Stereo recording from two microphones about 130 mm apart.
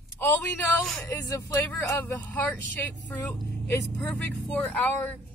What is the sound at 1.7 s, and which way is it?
Speech, 10° left (ahead or behind).